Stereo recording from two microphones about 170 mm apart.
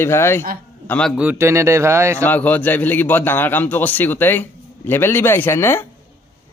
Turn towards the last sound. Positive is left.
turn(degrees=15)  # may be behind; listen again after turning